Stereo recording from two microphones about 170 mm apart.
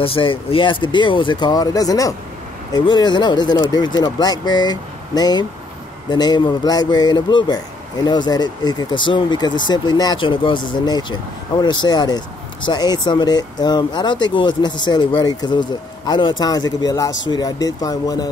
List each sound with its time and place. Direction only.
0.0 s speech: 30° left (ahead or behind)